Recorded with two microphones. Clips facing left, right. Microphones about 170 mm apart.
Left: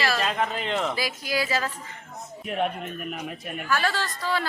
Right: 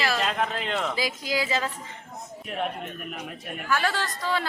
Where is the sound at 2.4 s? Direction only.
Centre (ahead or behind).